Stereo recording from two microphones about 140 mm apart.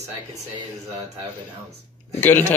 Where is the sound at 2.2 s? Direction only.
15° left (ahead or behind).